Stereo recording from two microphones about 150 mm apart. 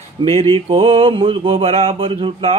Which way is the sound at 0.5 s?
40° right (ahead or behind).